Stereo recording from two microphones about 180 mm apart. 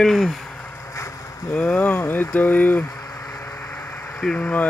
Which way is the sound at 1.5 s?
5° left (ahead or behind).